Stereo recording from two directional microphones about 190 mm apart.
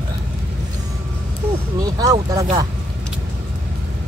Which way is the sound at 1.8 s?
20° right (ahead or behind).